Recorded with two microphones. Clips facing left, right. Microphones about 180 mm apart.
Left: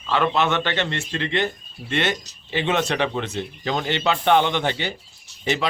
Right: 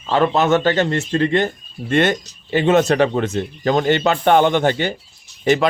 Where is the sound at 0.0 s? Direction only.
40° right (ahead or behind).